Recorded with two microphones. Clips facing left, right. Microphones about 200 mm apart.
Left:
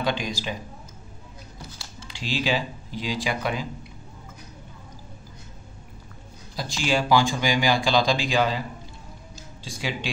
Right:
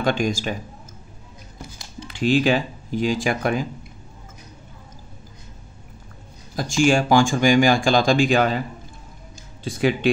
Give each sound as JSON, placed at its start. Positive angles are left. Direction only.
{"t": 0.0, "sound": "speech", "side_deg": -50}
{"t": 2.0, "sound": "speech", "side_deg": -55}
{"t": 6.8, "sound": "speech", "side_deg": -50}
{"t": 9.7, "sound": "speech", "side_deg": -55}